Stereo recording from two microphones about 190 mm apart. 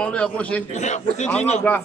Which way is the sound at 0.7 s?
40° left (ahead or behind).